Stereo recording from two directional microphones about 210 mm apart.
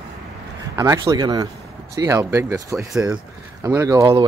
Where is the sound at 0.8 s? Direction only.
15° right (ahead or behind).